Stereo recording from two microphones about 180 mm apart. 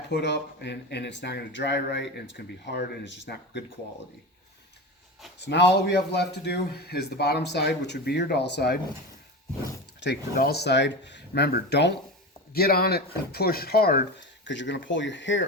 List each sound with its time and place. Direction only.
0.1 s speech: 70° left (ahead or behind)
5.5 s speech: 70° left (ahead or behind)
10.3 s speech: 60° left (ahead or behind)
12.5 s speech: 60° left (ahead or behind)
14.4 s speech: 90° left